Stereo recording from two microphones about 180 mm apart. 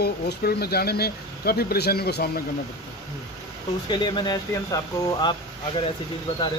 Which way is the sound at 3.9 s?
25° left (ahead or behind).